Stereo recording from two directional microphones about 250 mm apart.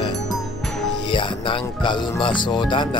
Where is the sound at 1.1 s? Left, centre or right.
Centre.